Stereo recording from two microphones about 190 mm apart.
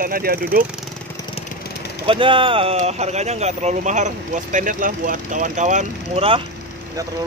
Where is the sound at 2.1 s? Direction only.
25° right (ahead or behind).